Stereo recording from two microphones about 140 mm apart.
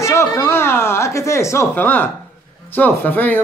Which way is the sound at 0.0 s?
20° left (ahead or behind).